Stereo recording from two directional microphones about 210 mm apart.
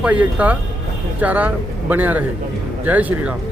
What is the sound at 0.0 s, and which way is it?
Speech, 5° right (ahead or behind).